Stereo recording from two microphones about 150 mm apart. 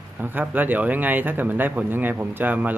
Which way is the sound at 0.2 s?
10° right (ahead or behind).